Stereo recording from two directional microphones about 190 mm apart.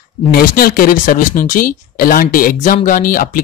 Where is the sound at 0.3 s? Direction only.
50° left (ahead or behind).